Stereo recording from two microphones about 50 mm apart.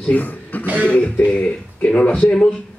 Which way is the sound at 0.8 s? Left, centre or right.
Left.